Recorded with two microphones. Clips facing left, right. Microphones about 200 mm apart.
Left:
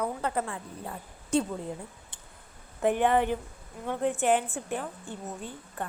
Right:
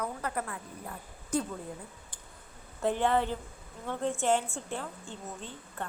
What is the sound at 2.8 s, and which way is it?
A woman's voice, 15° left (ahead or behind).